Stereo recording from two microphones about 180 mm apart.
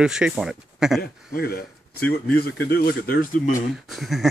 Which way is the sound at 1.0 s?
55° left (ahead or behind).